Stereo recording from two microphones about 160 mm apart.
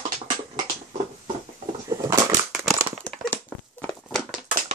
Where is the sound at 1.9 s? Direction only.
20° right (ahead or behind).